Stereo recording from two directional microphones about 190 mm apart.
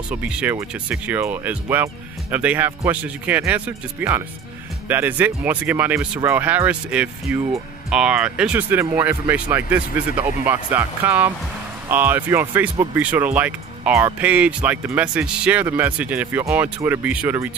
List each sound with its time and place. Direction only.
0.1 s speech: 5° right (ahead or behind)